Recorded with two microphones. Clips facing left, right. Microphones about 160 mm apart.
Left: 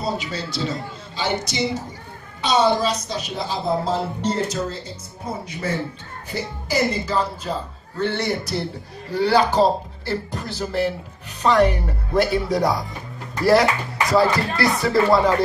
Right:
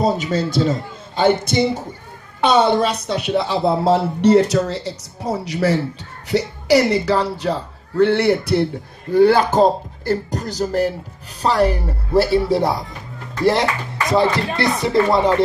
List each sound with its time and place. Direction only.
0.0 s a woman's voice: 45° right (ahead or behind); by 7.5 s 75° right (ahead or behind)
8.0 s a man's voice: 60° right (ahead or behind); by 12.8 s 25° right (ahead or behind)
14.0 s speech: 25° right (ahead or behind)